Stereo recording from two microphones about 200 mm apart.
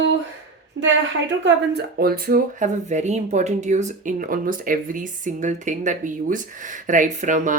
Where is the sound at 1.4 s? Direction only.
55° right (ahead or behind).